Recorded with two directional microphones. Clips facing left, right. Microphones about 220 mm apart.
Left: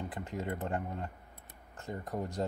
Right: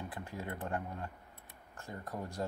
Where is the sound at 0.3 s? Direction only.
20° left (ahead or behind).